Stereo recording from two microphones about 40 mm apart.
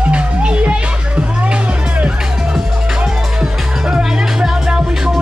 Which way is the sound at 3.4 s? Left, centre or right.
Centre.